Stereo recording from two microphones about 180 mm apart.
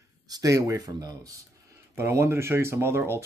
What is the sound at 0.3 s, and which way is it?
Speech, 20° right (ahead or behind).